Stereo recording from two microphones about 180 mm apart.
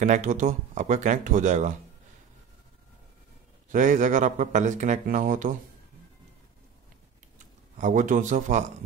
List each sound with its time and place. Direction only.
0.0 s speech: 45° right (ahead or behind)
3.7 s speech: 45° right (ahead or behind)
7.8 s speech: 45° right (ahead or behind)